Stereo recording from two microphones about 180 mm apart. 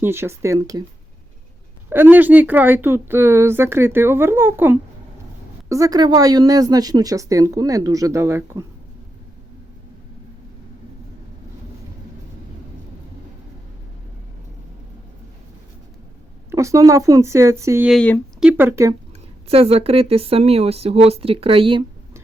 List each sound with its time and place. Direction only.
0.0 s speech: 15° right (ahead or behind)
1.9 s a woman's voice: 10° right (ahead or behind)
16.5 s speech: 15° right (ahead or behind)
17.8 s speech: 5° left (ahead or behind)
18.3 s speech: 10° right (ahead or behind)
19.5 s speech: 35° right (ahead or behind)